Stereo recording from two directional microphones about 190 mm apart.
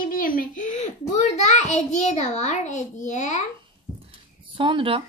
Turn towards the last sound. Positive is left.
turn(degrees=-25)  # may be behind; listen again after turning